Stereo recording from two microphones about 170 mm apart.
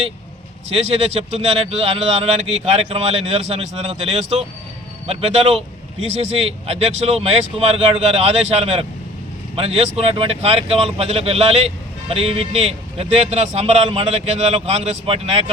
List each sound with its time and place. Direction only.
0.9 s speech: 35° right (ahead or behind)